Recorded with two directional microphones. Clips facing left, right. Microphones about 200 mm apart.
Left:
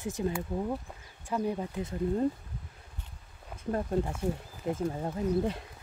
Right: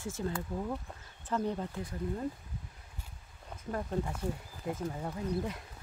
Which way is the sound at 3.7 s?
30° left (ahead or behind).